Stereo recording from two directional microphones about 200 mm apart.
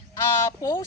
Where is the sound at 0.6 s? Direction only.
15° left (ahead or behind).